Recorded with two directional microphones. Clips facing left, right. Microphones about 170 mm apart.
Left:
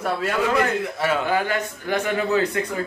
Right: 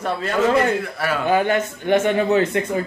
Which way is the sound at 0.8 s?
20° left (ahead or behind).